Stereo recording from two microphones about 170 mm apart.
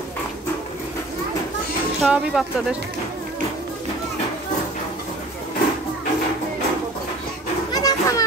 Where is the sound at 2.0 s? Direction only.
5° right (ahead or behind).